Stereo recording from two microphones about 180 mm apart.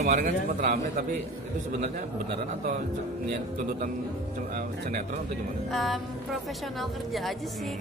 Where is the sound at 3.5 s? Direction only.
50° right (ahead or behind).